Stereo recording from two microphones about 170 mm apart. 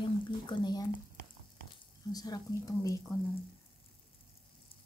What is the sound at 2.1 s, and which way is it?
Speech, 20° left (ahead or behind).